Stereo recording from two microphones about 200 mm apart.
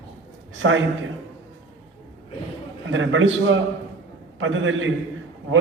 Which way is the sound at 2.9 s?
75° right (ahead or behind).